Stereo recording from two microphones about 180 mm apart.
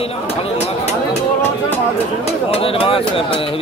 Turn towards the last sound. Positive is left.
turn(degrees=30)  # may be behind; listen again after turning